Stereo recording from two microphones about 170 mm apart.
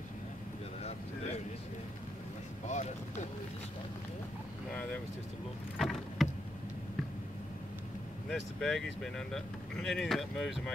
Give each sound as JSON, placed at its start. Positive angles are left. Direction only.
{"t": 2.7, "sound": "speech", "side_deg": 45}
{"t": 5.8, "sound": "vehicle", "side_deg": 0}
{"t": 8.3, "sound": "speech", "side_deg": 0}